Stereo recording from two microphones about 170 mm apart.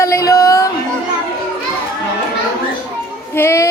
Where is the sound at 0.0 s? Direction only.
20° left (ahead or behind).